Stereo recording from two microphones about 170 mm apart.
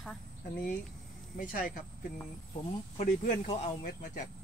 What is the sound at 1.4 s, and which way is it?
Speech, 55° left (ahead or behind).